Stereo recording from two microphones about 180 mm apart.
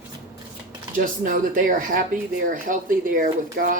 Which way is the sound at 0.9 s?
50° right (ahead or behind).